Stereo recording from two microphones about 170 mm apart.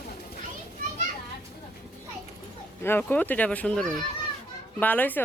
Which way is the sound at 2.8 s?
10° left (ahead or behind).